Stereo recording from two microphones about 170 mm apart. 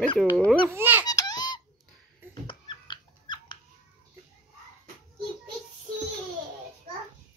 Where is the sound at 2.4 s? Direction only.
25° left (ahead or behind).